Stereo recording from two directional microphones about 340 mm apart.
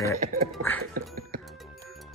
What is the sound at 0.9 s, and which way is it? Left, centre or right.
Music, right.